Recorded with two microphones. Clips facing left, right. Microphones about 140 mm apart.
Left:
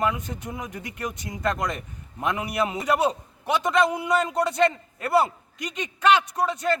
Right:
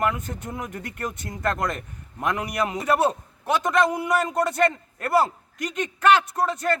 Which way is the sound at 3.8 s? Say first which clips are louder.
Even; centre (ahead or behind).